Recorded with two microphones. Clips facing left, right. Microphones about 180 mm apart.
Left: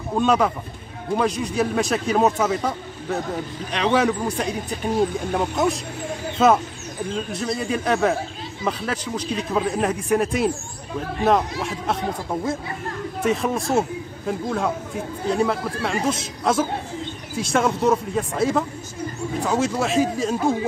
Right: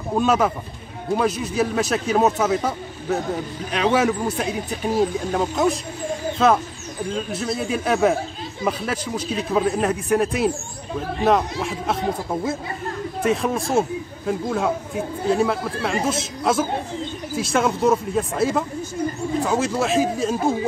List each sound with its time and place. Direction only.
0.2 s speech: 5° right (ahead or behind)